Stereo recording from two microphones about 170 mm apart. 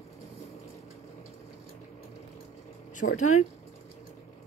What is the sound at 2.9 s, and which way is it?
Speech, 45° left (ahead or behind).